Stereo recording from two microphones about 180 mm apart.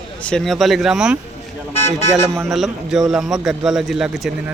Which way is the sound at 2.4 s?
Centre (ahead or behind).